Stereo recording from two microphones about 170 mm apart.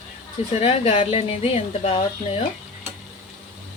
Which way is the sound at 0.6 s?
35° left (ahead or behind).